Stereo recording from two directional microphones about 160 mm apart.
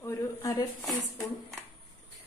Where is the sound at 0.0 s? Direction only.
20° left (ahead or behind).